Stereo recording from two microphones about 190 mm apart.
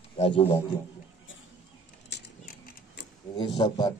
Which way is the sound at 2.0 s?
60° left (ahead or behind).